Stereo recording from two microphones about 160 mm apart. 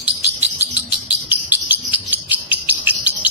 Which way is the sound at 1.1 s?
10° right (ahead or behind).